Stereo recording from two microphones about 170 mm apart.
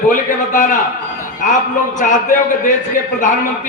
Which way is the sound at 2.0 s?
45° left (ahead or behind).